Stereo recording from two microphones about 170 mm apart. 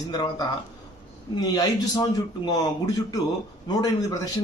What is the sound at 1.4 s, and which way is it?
A man's voice, 25° left (ahead or behind).